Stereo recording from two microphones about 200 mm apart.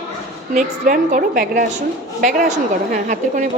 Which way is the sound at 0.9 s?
40° right (ahead or behind).